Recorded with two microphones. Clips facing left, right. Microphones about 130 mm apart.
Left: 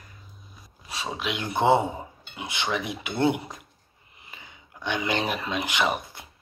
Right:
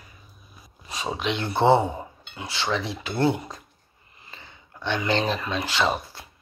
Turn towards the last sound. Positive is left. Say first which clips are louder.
# right 2 dB
turn(degrees=20)  # may be behind; listen again after turning